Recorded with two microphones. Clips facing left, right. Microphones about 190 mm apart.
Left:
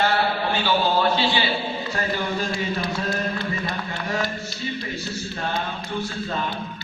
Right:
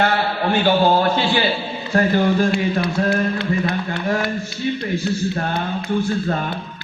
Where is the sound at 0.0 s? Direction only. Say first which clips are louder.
Right 3 dB; 55° right (ahead or behind).